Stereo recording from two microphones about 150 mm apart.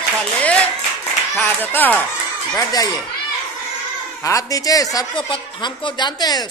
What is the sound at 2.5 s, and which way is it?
Speech, 25° left (ahead or behind).